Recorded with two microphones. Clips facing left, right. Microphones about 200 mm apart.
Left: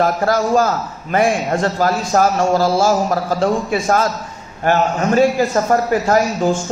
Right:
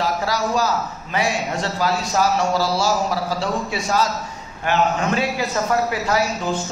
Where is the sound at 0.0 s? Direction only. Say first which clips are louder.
Left 6 dB; 50° left (ahead or behind).